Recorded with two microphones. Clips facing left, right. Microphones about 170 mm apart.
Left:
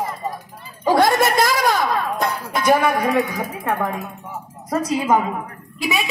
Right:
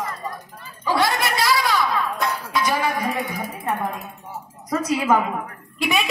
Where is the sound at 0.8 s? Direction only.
45° left (ahead or behind); by 3.9 s 85° left.